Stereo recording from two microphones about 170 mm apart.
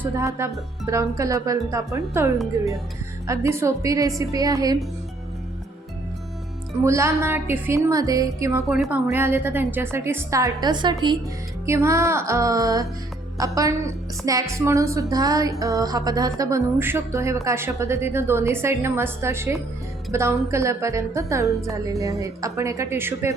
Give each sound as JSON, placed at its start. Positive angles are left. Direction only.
{"t": 0.0, "sound": "a woman's voice", "side_deg": -15}
{"t": 6.8, "sound": "a woman's voice", "side_deg": -15}
{"t": 8.6, "sound": "a woman's voice", "side_deg": 0}
{"t": 11.6, "sound": "a woman's voice", "side_deg": -15}